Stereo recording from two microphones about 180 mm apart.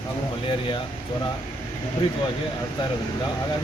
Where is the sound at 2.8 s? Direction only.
25° left (ahead or behind).